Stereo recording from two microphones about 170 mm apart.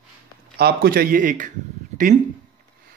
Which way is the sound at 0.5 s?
65° right (ahead or behind).